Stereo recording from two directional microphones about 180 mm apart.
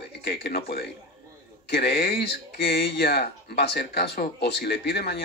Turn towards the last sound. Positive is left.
turn(degrees=65)  # may be behind; listen again after turning